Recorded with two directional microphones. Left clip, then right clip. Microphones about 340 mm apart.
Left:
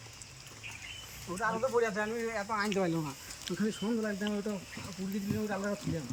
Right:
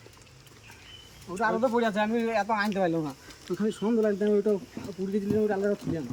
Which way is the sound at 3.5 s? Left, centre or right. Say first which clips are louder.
Right 5 dB; centre.